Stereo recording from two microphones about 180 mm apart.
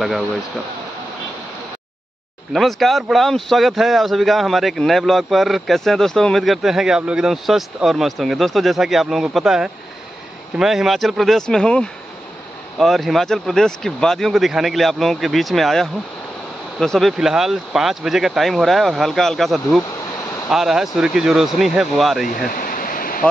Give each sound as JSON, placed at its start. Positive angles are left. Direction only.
{"t": 0.0, "sound": "speech", "side_deg": 0}
{"t": 2.5, "sound": "speech", "side_deg": 0}
{"t": 22.5, "sound": "waterfall", "side_deg": 50}